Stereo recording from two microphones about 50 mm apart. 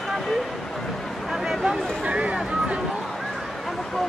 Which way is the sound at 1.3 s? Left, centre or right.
Centre.